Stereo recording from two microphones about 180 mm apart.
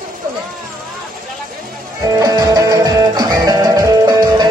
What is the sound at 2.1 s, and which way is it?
Music, 20° right (ahead or behind).